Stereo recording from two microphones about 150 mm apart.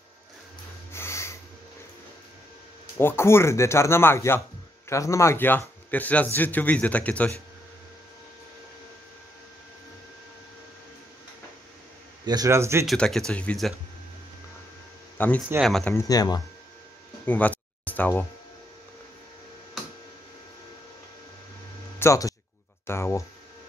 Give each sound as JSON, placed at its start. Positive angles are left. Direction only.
{"t": 0.9, "sound": "snort", "side_deg": 15}
{"t": 3.0, "sound": "a man's voice", "side_deg": 15}
{"t": 12.3, "sound": "speech", "side_deg": -20}
{"t": 12.8, "sound": "speech", "side_deg": 5}
{"t": 15.1, "sound": "speech", "side_deg": 10}
{"t": 15.9, "sound": "speech", "side_deg": 25}
{"t": 17.3, "sound": "music", "side_deg": 10}
{"t": 21.9, "sound": "speech", "side_deg": 20}
{"t": 22.8, "sound": "a sound", "side_deg": 20}